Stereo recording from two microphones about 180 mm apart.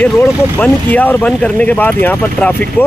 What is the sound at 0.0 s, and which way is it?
Speech, 10° left (ahead or behind).